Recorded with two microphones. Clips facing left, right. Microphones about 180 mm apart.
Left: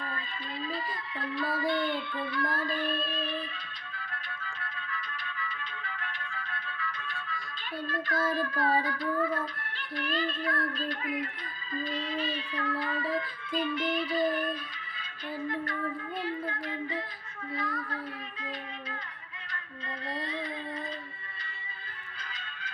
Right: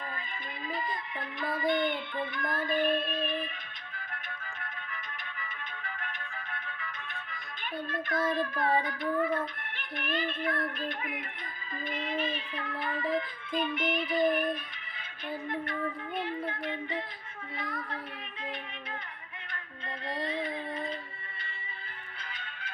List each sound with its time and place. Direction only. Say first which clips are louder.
1.5 s child singing: right 3 dB; 20° right (ahead or behind)
3.9 s music: even; 20° right (ahead or behind)
8.3 s child singing: even; 20° right (ahead or behind)
16.1 s child singing: even; 25° right (ahead or behind)
20.1 s child singing: right 3 dB; 25° right (ahead or behind)